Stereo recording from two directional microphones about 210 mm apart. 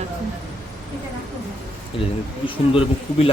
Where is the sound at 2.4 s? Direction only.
25° left (ahead or behind).